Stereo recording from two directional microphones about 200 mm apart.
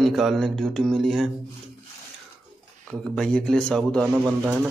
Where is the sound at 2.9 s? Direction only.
5° left (ahead or behind).